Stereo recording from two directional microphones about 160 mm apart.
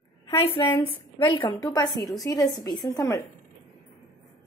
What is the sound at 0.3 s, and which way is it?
A woman's voice, 35° left (ahead or behind).